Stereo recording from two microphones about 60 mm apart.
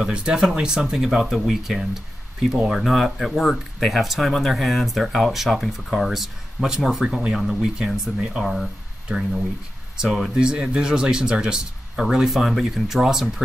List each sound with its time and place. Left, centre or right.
0.0 s speech: centre
9.9 s speech: centre
10.4 s speech: centre